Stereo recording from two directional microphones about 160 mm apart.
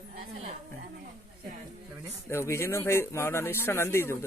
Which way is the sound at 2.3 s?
15° left (ahead or behind).